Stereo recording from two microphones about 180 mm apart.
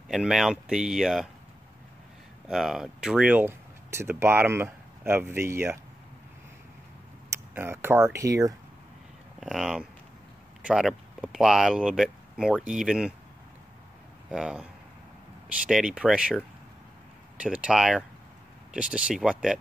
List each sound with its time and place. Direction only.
0.1 s speech: centre (ahead or behind)
2.4 s speech: centre (ahead or behind)
7.3 s speech: 10° right (ahead or behind)
9.4 s speech: centre (ahead or behind)
14.3 s speech: 5° right (ahead or behind)
17.4 s speech: 5° right (ahead or behind)